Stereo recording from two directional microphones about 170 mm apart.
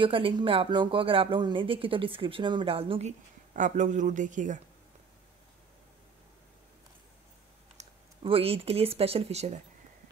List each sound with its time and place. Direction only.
0.0 s speech: 30° right (ahead or behind); by 4.6 s 50° right (ahead or behind)
7.7 s speech: 35° right (ahead or behind)